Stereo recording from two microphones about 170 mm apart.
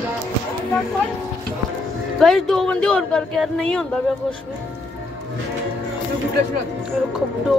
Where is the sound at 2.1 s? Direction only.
Centre (ahead or behind).